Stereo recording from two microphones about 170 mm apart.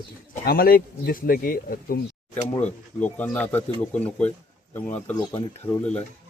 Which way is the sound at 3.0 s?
10° left (ahead or behind).